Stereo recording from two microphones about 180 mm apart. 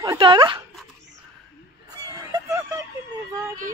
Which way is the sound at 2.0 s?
15° right (ahead or behind).